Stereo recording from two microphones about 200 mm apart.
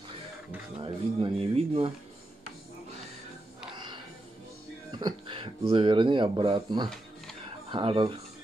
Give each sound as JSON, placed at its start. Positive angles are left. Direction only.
{"t": 0.7, "sound": "speech", "side_deg": -30}
{"t": 3.7, "sound": "music", "side_deg": -25}
{"t": 4.9, "sound": "speech", "side_deg": -25}